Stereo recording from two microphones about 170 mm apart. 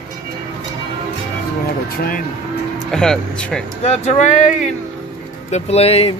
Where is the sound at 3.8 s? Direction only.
40° left (ahead or behind).